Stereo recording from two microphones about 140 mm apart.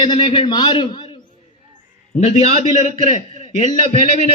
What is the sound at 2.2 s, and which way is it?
Speech, 50° left (ahead or behind).